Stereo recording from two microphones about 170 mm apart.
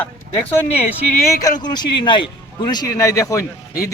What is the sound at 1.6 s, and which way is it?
Speech, 25° left (ahead or behind).